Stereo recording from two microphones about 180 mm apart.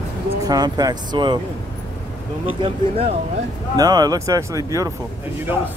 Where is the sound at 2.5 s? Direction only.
30° right (ahead or behind).